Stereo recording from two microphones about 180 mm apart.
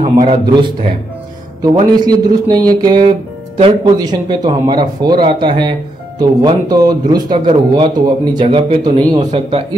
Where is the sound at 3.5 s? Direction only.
35° right (ahead or behind).